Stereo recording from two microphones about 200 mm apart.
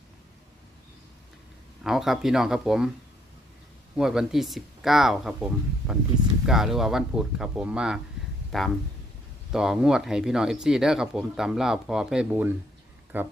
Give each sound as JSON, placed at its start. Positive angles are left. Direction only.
{"t": 1.8, "sound": "speech", "side_deg": 0}
{"t": 3.9, "sound": "speech", "side_deg": 0}